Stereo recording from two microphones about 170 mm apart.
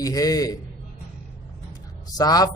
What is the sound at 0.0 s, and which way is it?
Speech, 20° left (ahead or behind).